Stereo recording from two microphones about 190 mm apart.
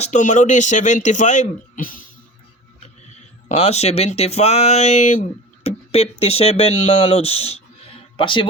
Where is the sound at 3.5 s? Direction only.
35° left (ahead or behind).